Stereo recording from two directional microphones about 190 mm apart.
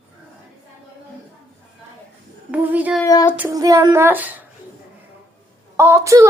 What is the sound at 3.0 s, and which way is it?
Child singing, 20° left (ahead or behind).